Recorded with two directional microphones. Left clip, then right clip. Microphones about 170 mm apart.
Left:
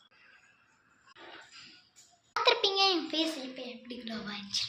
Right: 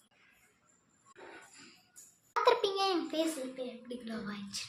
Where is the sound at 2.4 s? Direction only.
20° right (ahead or behind).